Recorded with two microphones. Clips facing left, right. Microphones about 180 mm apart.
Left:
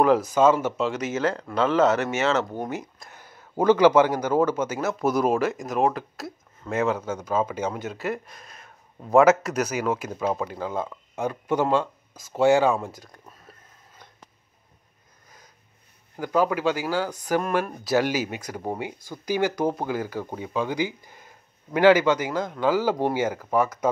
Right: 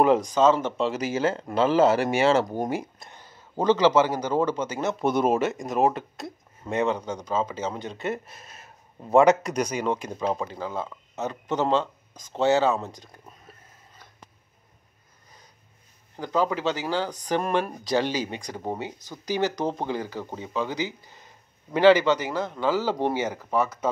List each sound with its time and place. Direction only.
0.0 s speech: 5° left (ahead or behind)
0.9 s speech: 30° right (ahead or behind)
3.0 s a sound: 5° left (ahead or behind)
3.5 s speech: 10° left (ahead or behind)
16.2 s speech: 10° left (ahead or behind)